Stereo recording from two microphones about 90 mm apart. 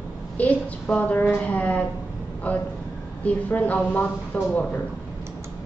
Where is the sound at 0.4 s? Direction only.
15° left (ahead or behind).